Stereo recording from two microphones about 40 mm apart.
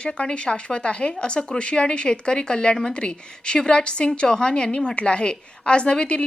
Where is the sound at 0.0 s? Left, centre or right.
Left.